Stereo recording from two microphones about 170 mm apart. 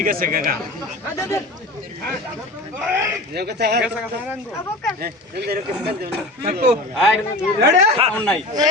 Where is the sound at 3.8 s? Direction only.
5° right (ahead or behind).